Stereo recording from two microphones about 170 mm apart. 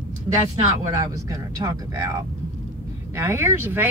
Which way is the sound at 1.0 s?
20° right (ahead or behind).